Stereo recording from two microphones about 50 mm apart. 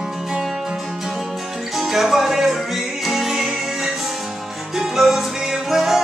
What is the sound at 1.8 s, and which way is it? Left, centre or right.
Music, centre.